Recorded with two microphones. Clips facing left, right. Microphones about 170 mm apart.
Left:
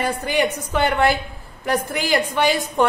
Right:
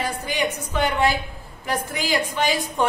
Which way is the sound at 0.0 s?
55° left (ahead or behind).